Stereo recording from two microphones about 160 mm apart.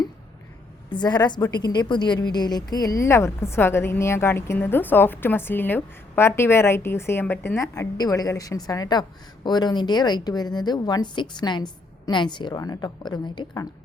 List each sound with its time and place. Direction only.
0.9 s a woman's voice: 25° left (ahead or behind)